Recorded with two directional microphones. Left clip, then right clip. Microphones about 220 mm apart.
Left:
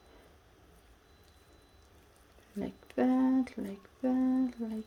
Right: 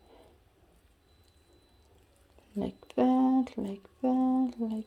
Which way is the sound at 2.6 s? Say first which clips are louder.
Right 3 dB; 20° right (ahead or behind).